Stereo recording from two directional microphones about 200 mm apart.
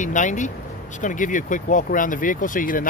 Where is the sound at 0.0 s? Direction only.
40° left (ahead or behind).